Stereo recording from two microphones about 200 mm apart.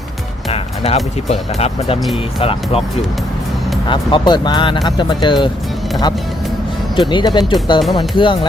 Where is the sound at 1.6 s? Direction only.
30° left (ahead or behind).